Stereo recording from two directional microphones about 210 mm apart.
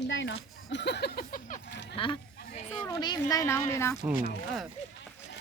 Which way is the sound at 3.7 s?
10° left (ahead or behind).